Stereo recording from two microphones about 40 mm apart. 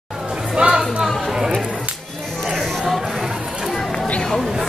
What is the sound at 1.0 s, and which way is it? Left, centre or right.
Chatter, centre.